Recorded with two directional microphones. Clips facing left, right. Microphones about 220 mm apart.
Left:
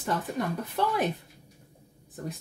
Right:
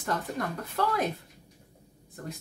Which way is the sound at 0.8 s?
15° left (ahead or behind).